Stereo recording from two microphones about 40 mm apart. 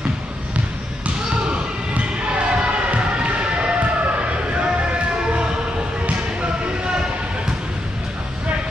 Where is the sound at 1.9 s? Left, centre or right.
Right.